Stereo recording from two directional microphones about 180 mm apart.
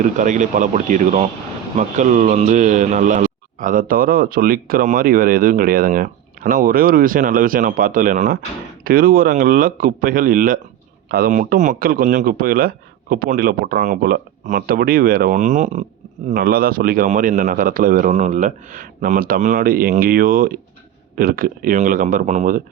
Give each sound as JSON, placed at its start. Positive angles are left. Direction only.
{"t": 0.0, "sound": "speech", "side_deg": -45}
{"t": 16.3, "sound": "speech", "side_deg": -55}